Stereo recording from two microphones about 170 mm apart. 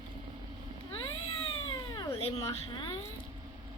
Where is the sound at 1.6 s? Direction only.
25° left (ahead or behind).